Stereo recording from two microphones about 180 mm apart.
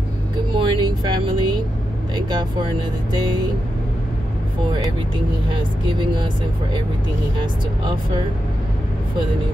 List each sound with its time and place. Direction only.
0.6 s vehicle: 25° right (ahead or behind)
3.1 s speech: 25° right (ahead or behind)
5.1 s speech: 25° right (ahead or behind)